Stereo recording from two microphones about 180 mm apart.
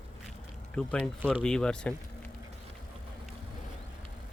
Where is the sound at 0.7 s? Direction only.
5° left (ahead or behind).